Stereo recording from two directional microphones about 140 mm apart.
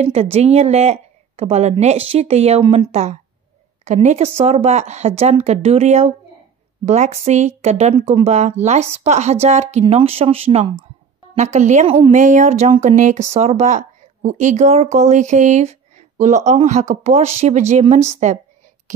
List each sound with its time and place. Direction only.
0.0 s speech: 50° right (ahead or behind)
12.1 s a woman's voice: 60° right (ahead or behind)